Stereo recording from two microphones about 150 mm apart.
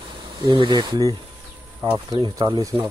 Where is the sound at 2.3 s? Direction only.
25° right (ahead or behind).